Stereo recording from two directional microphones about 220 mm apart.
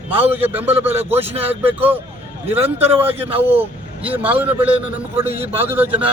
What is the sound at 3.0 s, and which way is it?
Speech, 25° right (ahead or behind).